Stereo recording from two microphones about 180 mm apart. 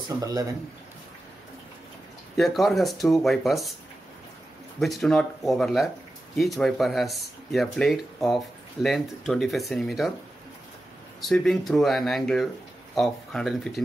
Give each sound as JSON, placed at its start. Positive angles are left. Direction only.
{"t": 0.1, "sound": "a man's voice", "side_deg": -20}
{"t": 2.3, "sound": "speech", "side_deg": 0}
{"t": 4.7, "sound": "speech", "side_deg": 0}
{"t": 11.1, "sound": "speech", "side_deg": 0}